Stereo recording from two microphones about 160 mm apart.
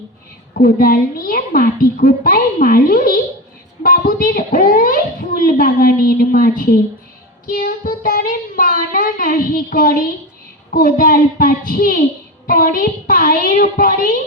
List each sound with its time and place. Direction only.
0.5 s a woman's voice: 60° left (ahead or behind)